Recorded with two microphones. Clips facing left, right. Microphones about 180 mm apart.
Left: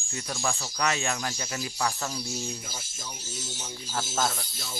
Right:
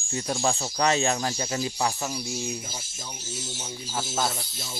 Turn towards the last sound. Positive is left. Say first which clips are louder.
# right 1 dB
turn(degrees=-10)  # may be behind; listen again after turning